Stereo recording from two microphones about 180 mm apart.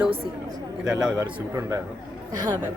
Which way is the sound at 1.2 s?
15° right (ahead or behind).